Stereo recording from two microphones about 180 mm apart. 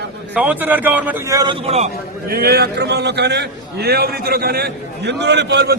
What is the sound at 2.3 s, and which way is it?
A man's voice, 60° right (ahead or behind).